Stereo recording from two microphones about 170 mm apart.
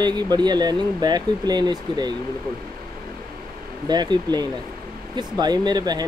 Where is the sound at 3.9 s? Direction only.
25° right (ahead or behind).